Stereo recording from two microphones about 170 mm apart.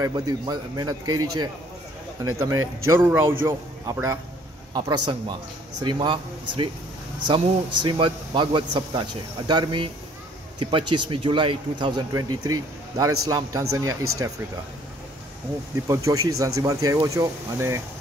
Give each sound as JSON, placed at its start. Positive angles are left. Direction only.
{"t": 0.0, "sound": "a man's voice", "side_deg": -25}
{"t": 15.9, "sound": "a man's voice", "side_deg": -20}